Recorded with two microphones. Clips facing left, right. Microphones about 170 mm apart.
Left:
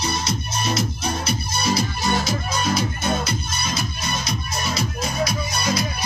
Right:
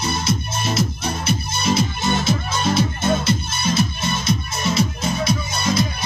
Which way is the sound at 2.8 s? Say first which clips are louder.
Right 4 dB; 25° right (ahead or behind).